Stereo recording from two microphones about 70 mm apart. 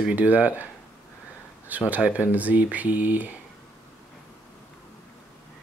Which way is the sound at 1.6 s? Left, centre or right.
Right.